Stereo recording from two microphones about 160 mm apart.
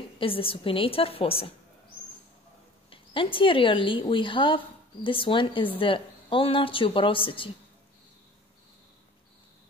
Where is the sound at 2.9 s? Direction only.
35° left (ahead or behind).